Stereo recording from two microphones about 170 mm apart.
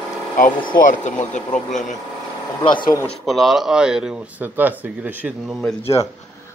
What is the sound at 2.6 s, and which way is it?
Speech, 30° left (ahead or behind).